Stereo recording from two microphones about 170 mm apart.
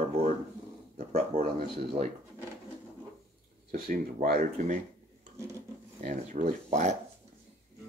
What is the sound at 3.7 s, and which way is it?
Speech, 60° right (ahead or behind).